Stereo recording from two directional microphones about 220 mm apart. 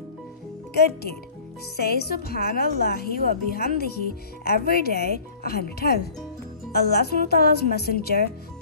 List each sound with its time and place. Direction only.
1.8 s a woman's voice: 45° left (ahead or behind)